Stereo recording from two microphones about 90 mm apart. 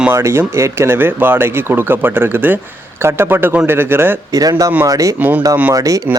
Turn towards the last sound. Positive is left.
turn(degrees=-35)  # may be behind; listen again after turning